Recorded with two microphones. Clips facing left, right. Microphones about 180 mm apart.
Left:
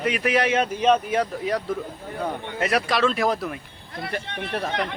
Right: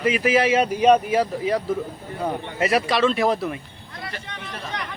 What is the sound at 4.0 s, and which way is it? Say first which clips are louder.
Speech: left 5 dB; 55° left (ahead or behind).